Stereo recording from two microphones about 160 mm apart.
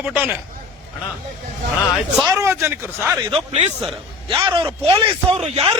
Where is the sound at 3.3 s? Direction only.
40° right (ahead or behind).